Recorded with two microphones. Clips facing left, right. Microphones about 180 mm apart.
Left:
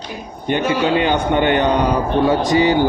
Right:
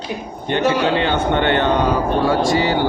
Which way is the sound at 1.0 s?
15° left (ahead or behind).